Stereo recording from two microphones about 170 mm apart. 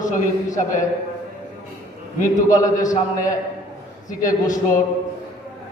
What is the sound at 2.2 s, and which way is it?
Speech, 50° left (ahead or behind).